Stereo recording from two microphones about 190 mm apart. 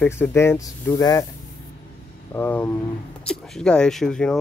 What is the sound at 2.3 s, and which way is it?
Speech, 10° left (ahead or behind).